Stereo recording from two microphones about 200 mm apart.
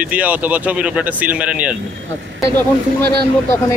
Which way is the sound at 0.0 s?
5° right (ahead or behind).